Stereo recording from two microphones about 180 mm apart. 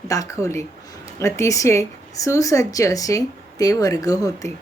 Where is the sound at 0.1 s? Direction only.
20° left (ahead or behind).